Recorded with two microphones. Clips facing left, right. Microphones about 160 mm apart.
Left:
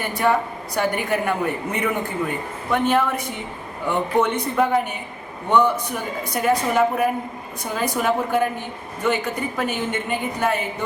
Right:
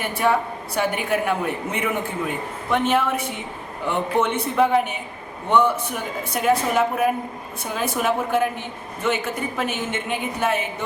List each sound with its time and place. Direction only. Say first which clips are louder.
0.0 s a man's voice: left 1 dB; 5° right (ahead or behind)